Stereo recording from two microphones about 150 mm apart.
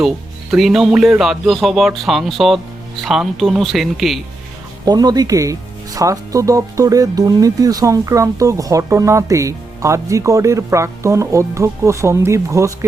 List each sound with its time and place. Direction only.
0.5 s speech: centre (ahead or behind)
4.9 s speech: 25° right (ahead or behind)